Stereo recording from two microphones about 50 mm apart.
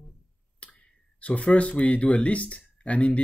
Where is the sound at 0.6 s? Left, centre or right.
Left.